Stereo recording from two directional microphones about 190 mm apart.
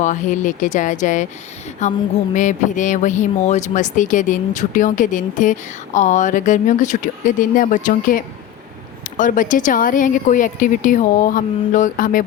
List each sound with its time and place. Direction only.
0.0 s speech: 40° left (ahead or behind)